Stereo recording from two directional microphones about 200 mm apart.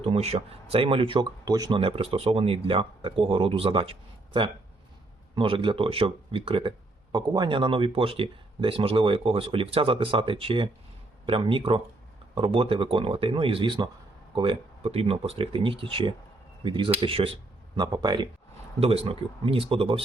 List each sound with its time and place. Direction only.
0.0 s speech: 30° right (ahead or behind)